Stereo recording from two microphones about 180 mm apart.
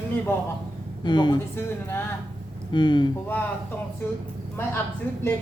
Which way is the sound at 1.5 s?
15° left (ahead or behind).